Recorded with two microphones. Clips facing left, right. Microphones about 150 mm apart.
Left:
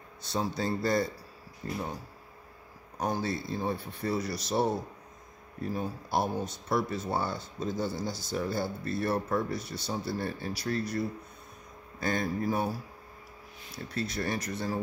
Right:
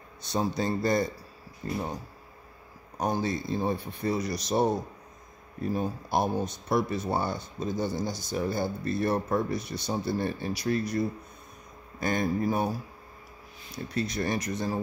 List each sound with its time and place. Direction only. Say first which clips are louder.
0.2 s speech: right 3 dB; 15° right (ahead or behind)
3.0 s speech: right 3 dB; 20° right (ahead or behind)
13.8 s speech: right 3 dB; 15° right (ahead or behind)